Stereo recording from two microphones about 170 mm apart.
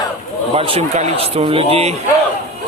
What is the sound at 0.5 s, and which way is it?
A man's voice, 35° right (ahead or behind).